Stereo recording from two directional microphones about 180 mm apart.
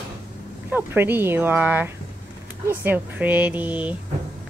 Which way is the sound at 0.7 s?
10° right (ahead or behind).